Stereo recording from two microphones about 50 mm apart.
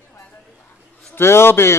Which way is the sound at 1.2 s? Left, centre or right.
Left.